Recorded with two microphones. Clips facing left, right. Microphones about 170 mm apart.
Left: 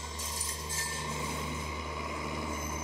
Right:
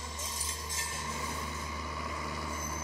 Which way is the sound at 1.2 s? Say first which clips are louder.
Left 3 dB; 20° left (ahead or behind).